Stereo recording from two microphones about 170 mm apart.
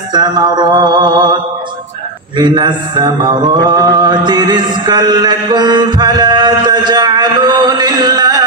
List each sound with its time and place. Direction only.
0.1 s mantra: 25° right (ahead or behind)